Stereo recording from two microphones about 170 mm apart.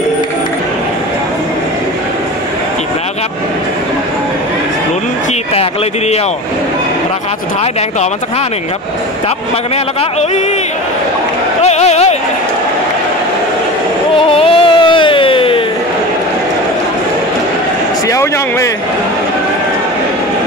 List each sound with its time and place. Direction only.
11.6 s chatter: 40° left (ahead or behind)
14.1 s music: 35° left (ahead or behind)
18.0 s speech: 20° left (ahead or behind)